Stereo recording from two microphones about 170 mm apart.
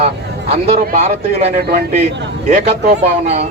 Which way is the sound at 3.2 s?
40° right (ahead or behind).